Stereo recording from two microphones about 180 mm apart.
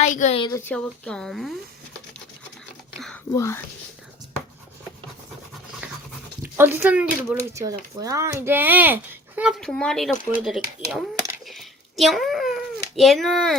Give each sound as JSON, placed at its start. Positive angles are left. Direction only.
{"t": 0.0, "sound": "a woman's voice", "side_deg": 40}
{"t": 0.4, "sound": "speech", "side_deg": 15}
{"t": 3.3, "sound": "speech", "side_deg": 15}
{"t": 5.8, "sound": "dog", "side_deg": -10}
{"t": 6.4, "sound": "speech", "side_deg": -10}
{"t": 11.4, "sound": "a sound", "side_deg": 0}